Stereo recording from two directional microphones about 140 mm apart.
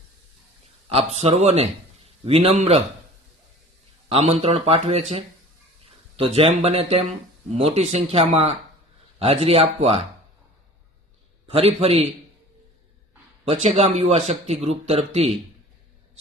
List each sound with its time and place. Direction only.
0.9 s speech: 45° right (ahead or behind)
4.1 s speech: 45° right (ahead or behind)
11.4 s speech: 45° right (ahead or behind)
13.5 s speech: 50° right (ahead or behind)